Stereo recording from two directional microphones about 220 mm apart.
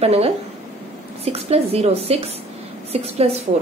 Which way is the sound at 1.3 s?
30° right (ahead or behind).